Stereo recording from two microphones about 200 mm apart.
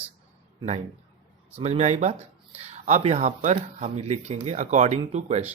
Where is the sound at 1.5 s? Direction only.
35° right (ahead or behind).